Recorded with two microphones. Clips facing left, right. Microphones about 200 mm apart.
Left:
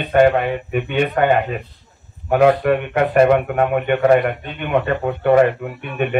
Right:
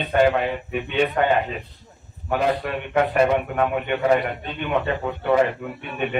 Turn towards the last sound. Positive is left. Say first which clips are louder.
# left 5 dB
turn(degrees=55)  # may be behind; listen again after turning